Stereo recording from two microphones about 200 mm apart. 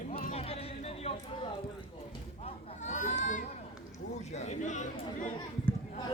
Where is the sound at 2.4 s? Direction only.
35° left (ahead or behind).